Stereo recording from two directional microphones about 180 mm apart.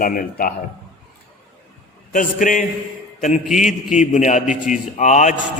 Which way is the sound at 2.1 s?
45° left (ahead or behind).